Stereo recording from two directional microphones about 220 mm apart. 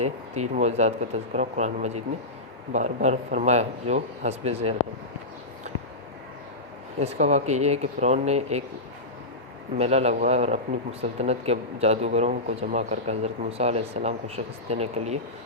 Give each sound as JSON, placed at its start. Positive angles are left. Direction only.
{"t": 0.0, "sound": "a man's voice", "side_deg": -30}
{"t": 7.0, "sound": "speech", "side_deg": -30}
{"t": 9.7, "sound": "a man's voice", "side_deg": -30}